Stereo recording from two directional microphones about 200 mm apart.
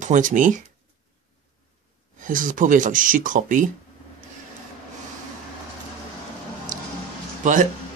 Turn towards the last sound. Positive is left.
turn(degrees=-40)  # may be behind; listen again after turning